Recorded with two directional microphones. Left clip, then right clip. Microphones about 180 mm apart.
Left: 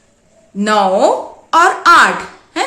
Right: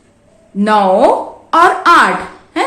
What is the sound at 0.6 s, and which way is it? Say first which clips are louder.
A woman's voice: right 2 dB; 15° left (ahead or behind).